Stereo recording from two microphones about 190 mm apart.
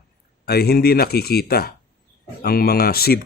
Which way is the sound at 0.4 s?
55° left (ahead or behind).